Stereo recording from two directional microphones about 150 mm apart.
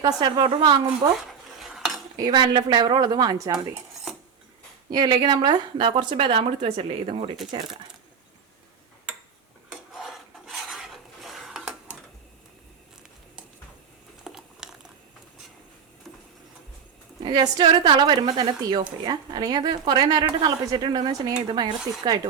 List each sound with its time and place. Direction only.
0.0 s speech: 30° right (ahead or behind)
1.6 s dishes: centre (ahead or behind)
2.1 s speech: 30° right (ahead or behind)
4.9 s a woman's voice: 30° right (ahead or behind)
9.9 s filing: centre (ahead or behind)
14.3 s a sound: 5° right (ahead or behind)
17.2 s a woman's voice: 30° right (ahead or behind)